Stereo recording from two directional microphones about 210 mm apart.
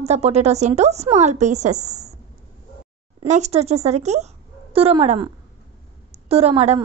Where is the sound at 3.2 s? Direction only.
30° right (ahead or behind).